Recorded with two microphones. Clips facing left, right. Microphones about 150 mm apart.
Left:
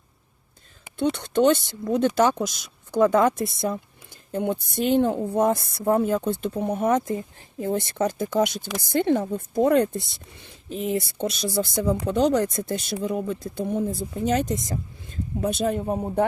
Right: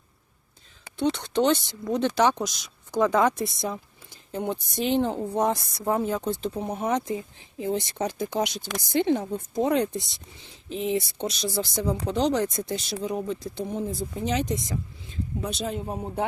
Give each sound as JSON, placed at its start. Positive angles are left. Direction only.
{"t": 0.9, "sound": "speech", "side_deg": 50}